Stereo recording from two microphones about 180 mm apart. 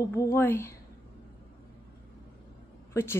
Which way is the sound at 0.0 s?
15° left (ahead or behind).